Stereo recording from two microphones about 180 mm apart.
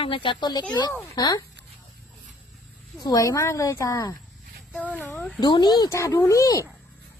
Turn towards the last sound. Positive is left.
turn(degrees=20)  # may be behind; listen again after turning